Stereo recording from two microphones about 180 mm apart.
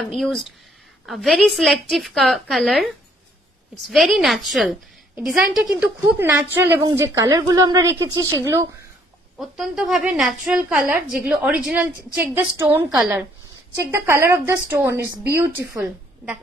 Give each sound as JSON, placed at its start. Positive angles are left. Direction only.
{"t": 0.0, "sound": "a woman's voice", "side_deg": 0}
{"t": 9.4, "sound": "a woman's voice", "side_deg": 0}